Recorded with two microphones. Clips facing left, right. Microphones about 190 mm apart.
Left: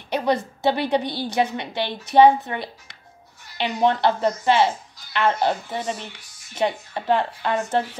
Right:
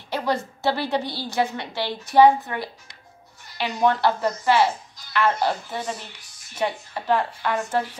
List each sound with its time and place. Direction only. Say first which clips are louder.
0.1 s a woman's voice: left 3 dB; 20° left (ahead or behind)